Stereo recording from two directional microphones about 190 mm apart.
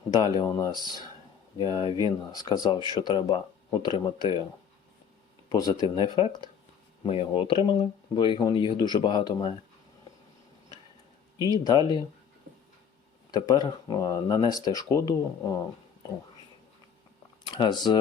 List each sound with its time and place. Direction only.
0.1 s speech: 20° left (ahead or behind)
5.5 s speech: 20° left (ahead or behind)
11.6 s speech: 20° left (ahead or behind)
13.3 s speech: 20° left (ahead or behind)
17.4 s speech: 25° left (ahead or behind)